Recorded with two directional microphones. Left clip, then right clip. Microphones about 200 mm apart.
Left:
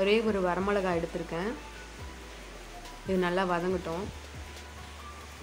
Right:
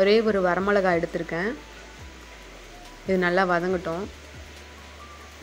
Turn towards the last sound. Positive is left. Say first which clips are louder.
# right 6 dB
turn(degrees=-20)  # may be behind; listen again after turning